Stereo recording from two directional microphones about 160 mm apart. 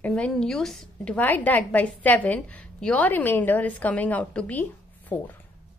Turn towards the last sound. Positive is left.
turn(degrees=10)  # may be behind; listen again after turning